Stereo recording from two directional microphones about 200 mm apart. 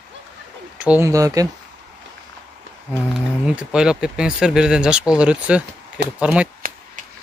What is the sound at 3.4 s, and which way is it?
Speech, 5° right (ahead or behind).